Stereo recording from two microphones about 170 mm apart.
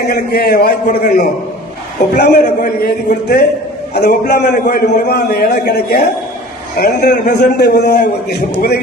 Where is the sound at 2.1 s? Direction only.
75° left (ahead or behind).